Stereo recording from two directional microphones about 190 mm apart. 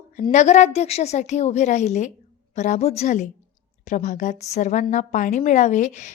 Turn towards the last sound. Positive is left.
turn(degrees=40)  # may be behind; listen again after turning